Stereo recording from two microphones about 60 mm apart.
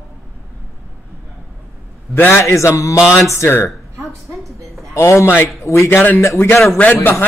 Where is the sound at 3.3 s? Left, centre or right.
Left.